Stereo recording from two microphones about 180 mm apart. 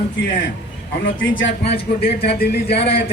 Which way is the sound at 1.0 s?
90° left.